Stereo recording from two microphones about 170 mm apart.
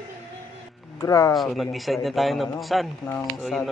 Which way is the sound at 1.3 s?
Centre (ahead or behind).